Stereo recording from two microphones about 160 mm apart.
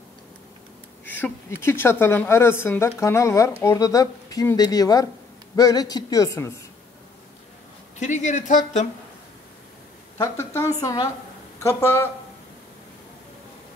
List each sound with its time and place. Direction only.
1.0 s a woman's voice: 10° left (ahead or behind)
8.0 s speech: 50° left (ahead or behind)
10.1 s a woman's voice: 20° left (ahead or behind)